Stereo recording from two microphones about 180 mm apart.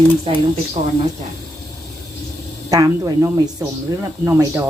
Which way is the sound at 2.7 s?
20° right (ahead or behind).